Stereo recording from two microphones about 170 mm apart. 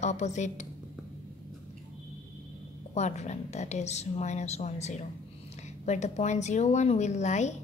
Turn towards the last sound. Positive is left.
turn(degrees=40)  # may be behind; listen again after turning